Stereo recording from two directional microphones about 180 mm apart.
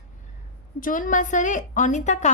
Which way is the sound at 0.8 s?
50° left (ahead or behind).